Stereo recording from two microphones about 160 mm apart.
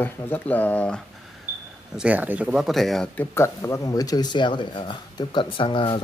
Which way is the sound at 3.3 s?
20° left (ahead or behind).